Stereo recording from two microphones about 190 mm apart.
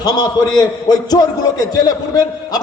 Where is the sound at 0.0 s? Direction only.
20° left (ahead or behind).